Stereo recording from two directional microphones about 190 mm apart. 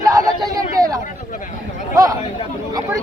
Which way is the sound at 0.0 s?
20° right (ahead or behind).